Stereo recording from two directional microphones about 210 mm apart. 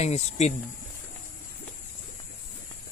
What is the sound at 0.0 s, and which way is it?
Speech, 30° left (ahead or behind).